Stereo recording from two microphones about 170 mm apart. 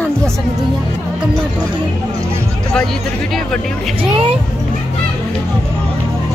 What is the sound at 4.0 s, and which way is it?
Speech, 30° right (ahead or behind).